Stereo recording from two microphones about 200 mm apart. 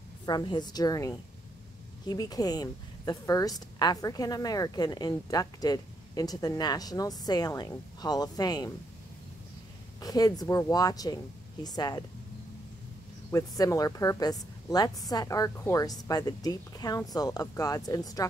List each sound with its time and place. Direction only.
0.2 s a woman's voice: 20° left (ahead or behind)
9.9 s a woman's voice: 20° left (ahead or behind)
13.3 s a woman's voice: 15° left (ahead or behind)